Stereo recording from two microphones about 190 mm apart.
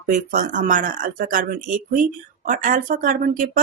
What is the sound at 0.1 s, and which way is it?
Speech, 40° right (ahead or behind).